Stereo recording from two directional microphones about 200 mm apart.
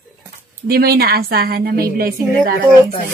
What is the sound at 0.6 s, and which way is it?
A woman's voice, 50° right (ahead or behind).